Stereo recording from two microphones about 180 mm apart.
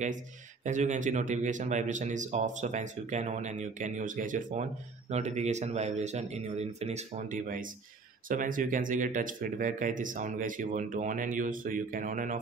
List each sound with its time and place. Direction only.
0.7 s speech: 45° right (ahead or behind)